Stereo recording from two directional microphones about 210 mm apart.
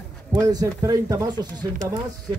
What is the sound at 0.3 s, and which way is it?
Speech, 20° right (ahead or behind).